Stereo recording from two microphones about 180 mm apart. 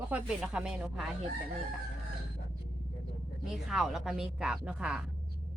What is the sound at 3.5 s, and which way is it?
Speech, centre (ahead or behind).